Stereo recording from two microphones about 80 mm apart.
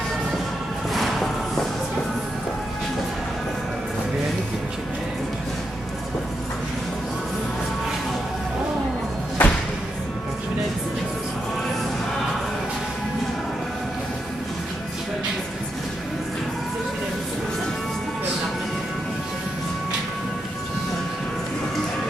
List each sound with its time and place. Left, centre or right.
0.9 s music: centre
9.4 s music: left